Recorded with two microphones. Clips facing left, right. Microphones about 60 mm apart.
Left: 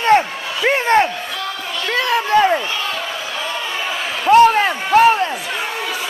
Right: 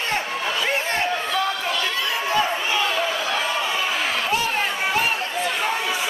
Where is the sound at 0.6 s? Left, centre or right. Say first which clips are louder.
Left 12 dB; left.